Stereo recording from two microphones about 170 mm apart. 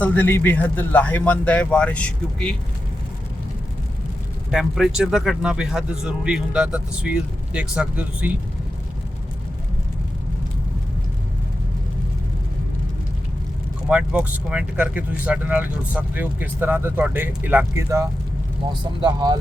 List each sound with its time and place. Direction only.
0.0 s speech: 10° left (ahead or behind)
4.5 s speech: centre (ahead or behind)
13.9 s speech: 10° right (ahead or behind); by 19.4 s 25° right (ahead or behind)